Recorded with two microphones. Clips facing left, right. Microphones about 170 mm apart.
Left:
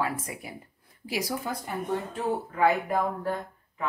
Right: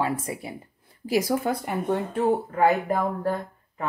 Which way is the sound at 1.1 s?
50° right (ahead or behind).